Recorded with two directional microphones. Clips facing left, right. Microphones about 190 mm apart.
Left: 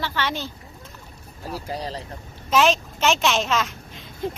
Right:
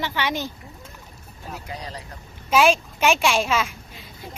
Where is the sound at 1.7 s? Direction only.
30° left (ahead or behind).